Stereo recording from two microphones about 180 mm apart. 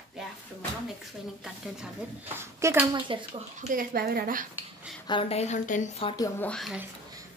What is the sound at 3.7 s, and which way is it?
Speech, 55° right (ahead or behind).